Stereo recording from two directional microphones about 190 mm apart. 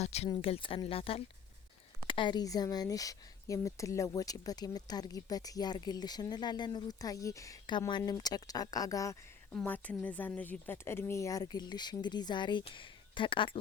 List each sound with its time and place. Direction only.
0.0 s speech: 35° left (ahead or behind)